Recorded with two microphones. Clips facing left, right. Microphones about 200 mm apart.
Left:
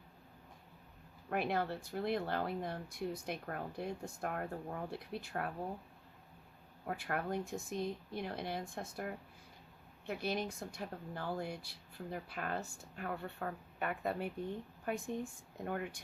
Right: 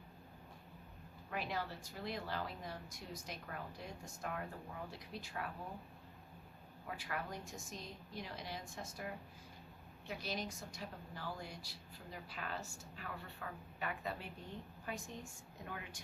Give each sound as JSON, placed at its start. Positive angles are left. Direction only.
{"t": 1.3, "sound": "speech", "side_deg": 55}
{"t": 6.8, "sound": "speech", "side_deg": 55}
{"t": 10.1, "sound": "speech", "side_deg": 55}